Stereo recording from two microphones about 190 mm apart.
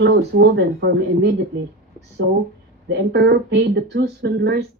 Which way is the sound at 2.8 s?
65° right (ahead or behind).